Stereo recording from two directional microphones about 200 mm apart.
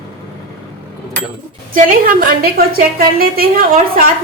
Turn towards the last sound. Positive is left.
turn(degrees=-50)  # may be behind; listen again after turning